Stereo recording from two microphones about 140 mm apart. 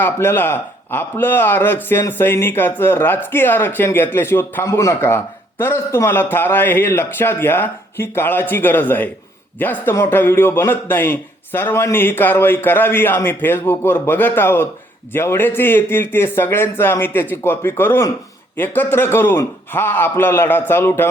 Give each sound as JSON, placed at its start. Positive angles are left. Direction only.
{"t": 0.0, "sound": "speech", "side_deg": 15}